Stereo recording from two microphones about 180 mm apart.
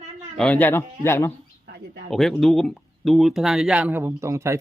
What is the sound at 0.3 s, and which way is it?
Speech, 5° left (ahead or behind).